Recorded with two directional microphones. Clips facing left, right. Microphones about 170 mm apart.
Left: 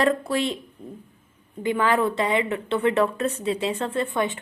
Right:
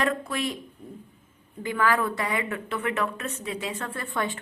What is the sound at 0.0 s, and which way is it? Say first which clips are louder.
Speech: left 5 dB; 30° left (ahead or behind).